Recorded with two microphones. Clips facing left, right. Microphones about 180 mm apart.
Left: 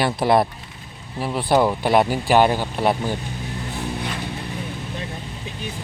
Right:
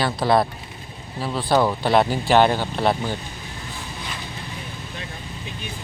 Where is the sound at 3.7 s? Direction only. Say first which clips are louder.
Left 8 dB; 65° left (ahead or behind).